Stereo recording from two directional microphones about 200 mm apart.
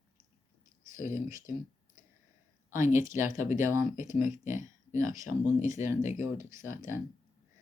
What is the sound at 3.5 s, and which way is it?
Speech, 10° right (ahead or behind).